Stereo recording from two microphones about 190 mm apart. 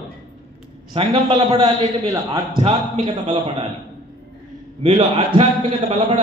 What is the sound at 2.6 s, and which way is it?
A man's voice, 35° right (ahead or behind).